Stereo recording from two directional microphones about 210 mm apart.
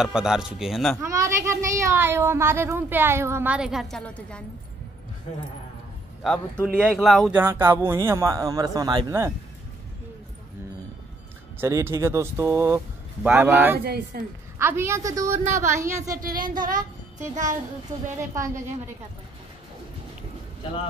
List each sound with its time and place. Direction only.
0.0 s speech: 5° right (ahead or behind)
1.0 s speech: 15° right (ahead or behind); by 4.5 s 5° left (ahead or behind)
6.2 s speech: 5° left (ahead or behind); by 9.3 s 15° right (ahead or behind)
11.6 s speech: 10° right (ahead or behind)
13.7 s speech: 45° right (ahead or behind)
14.6 s speech: 10° right (ahead or behind)
16.2 s speech: 40° right (ahead or behind)
18.1 s speech: 15° right (ahead or behind)